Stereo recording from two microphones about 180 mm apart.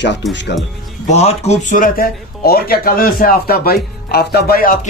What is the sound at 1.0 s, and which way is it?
Speech, 35° left (ahead or behind).